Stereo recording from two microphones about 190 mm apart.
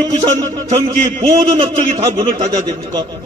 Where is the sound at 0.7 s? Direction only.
30° right (ahead or behind).